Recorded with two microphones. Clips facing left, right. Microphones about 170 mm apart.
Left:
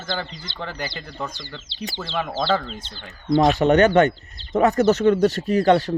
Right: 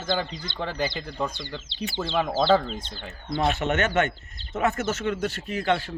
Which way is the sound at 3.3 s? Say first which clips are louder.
Left 9 dB; 35° left (ahead or behind).